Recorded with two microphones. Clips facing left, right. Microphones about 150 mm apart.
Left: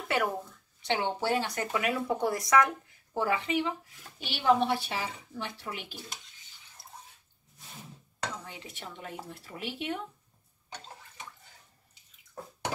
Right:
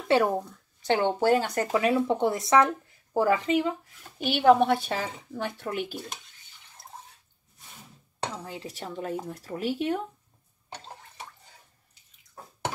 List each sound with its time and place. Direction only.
0.1 s a woman's voice: 30° right (ahead or behind)
0.8 s speech: 50° right (ahead or behind); by 3.2 s 25° right (ahead or behind)
3.2 s speech: 40° right (ahead or behind)
4.2 s a woman's voice: 50° right (ahead or behind)
8.2 s speech: 35° right (ahead or behind)